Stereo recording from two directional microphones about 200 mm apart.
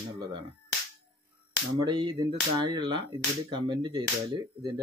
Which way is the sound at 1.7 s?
25° right (ahead or behind).